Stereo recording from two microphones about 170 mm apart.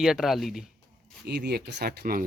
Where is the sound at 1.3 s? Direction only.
75° right (ahead or behind).